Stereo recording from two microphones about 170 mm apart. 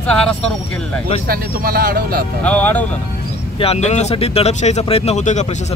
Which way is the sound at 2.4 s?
10° left (ahead or behind).